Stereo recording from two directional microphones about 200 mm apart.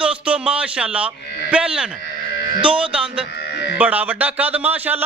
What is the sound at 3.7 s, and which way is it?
A man's voice, 10° right (ahead or behind).